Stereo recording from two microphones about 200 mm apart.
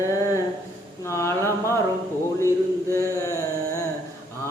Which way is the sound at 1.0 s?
15° left (ahead or behind).